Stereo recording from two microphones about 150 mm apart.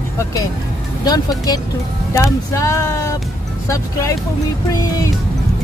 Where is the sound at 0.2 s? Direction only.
25° left (ahead or behind).